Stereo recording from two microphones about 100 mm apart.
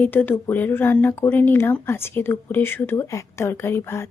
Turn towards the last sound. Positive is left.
turn(degrees=25)  # may be behind; listen again after turning